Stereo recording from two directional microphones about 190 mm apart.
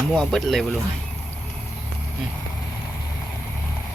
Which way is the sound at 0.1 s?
Centre (ahead or behind).